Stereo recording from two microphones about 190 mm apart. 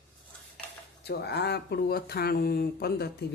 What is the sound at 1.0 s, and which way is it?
Speech, 60° left (ahead or behind).